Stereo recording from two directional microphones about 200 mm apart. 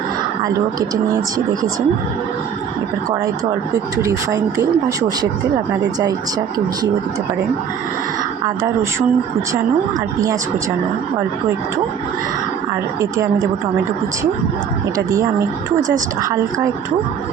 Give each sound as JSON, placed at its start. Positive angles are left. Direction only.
{"t": 4.0, "sound": "speech", "side_deg": -15}
{"t": 8.4, "sound": "speech", "side_deg": -15}
{"t": 14.9, "sound": "speech", "side_deg": -15}